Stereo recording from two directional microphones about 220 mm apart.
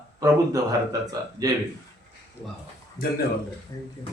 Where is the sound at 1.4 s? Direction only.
15° right (ahead or behind).